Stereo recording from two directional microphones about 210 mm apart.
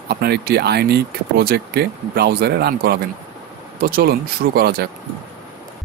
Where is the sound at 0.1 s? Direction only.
50° right (ahead or behind).